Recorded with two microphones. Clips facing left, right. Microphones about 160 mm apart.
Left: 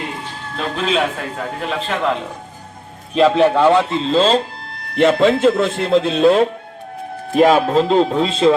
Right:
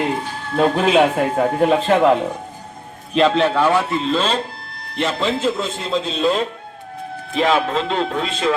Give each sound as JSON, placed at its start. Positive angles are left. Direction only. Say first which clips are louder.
{"t": 0.5, "sound": "speech", "louder": "right 5 dB", "side_deg": -45}
{"t": 3.2, "sound": "a man's voice", "louder": "left 3 dB", "side_deg": 10}
{"t": 4.9, "sound": "speech", "louder": "left 8 dB", "side_deg": 55}
{"t": 7.3, "sound": "music", "louder": "left 6 dB", "side_deg": 40}